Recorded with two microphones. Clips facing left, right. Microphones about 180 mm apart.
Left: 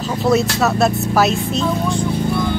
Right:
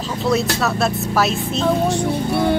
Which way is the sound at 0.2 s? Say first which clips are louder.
Left 3 dB; centre (ahead or behind).